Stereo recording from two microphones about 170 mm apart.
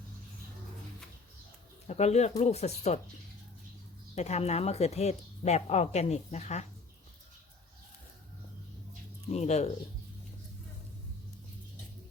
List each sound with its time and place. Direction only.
1.9 s speech: 40° left (ahead or behind)
4.1 s speech: 40° left (ahead or behind)
9.3 s speech: 40° left (ahead or behind)